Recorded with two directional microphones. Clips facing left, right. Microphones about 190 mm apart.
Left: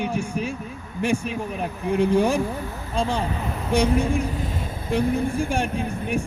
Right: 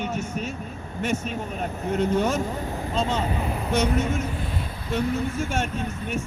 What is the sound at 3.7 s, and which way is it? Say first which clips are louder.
Speech: left 3 dB; 10° left (ahead or behind).